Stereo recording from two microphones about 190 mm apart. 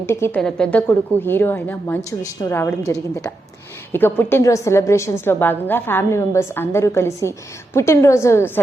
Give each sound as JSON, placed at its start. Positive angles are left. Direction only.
{"t": 0.1, "sound": "a woman's voice", "side_deg": 10}